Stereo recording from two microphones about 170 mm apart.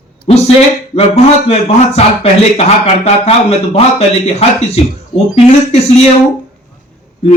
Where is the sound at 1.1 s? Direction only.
40° left (ahead or behind).